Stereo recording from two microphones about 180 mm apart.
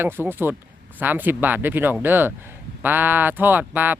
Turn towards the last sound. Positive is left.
turn(degrees=-10)  # may be behind; listen again after turning